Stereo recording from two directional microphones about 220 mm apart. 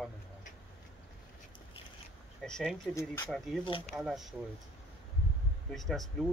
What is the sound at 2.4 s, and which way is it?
Speech, centre (ahead or behind).